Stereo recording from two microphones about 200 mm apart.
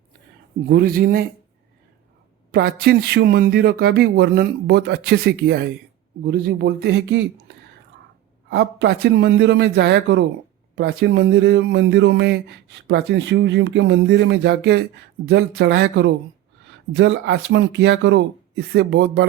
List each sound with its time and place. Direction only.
0.7 s speech: 50° right (ahead or behind)
2.5 s speech: 50° right (ahead or behind)
8.4 s speech: 60° right (ahead or behind)